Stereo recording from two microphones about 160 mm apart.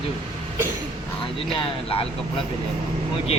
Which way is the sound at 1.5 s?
35° left (ahead or behind).